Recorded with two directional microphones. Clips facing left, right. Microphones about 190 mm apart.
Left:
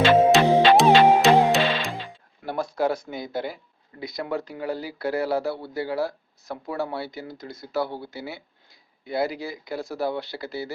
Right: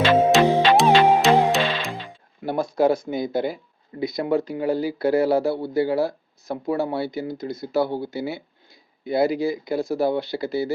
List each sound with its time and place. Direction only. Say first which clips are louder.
0.3 s music: even; centre (ahead or behind)
2.4 s a sound: right 4 dB; 20° right (ahead or behind)
3.1 s speech: right 6 dB; 20° right (ahead or behind)